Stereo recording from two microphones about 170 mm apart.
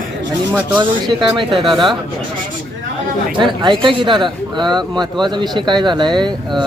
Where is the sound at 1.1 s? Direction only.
30° right (ahead or behind).